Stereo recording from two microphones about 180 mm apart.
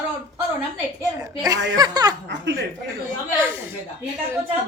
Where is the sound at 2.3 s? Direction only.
75° right (ahead or behind).